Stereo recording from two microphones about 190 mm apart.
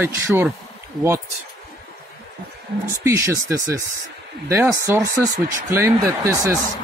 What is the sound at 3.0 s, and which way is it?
Speech, 15° right (ahead or behind).